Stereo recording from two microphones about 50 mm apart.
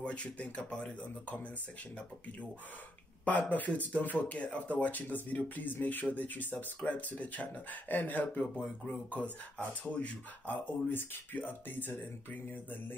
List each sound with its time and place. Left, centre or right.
0.0 s speech: left
3.3 s speech: left